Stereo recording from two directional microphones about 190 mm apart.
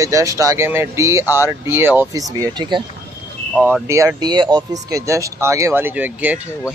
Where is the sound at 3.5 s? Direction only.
10° right (ahead or behind).